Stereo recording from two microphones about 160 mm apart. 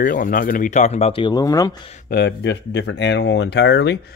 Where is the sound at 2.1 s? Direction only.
90° left.